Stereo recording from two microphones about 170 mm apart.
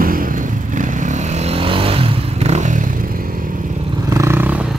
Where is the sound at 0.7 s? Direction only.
45° right (ahead or behind).